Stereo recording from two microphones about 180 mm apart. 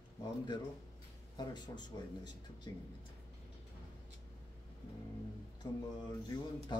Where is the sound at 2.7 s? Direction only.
25° left (ahead or behind).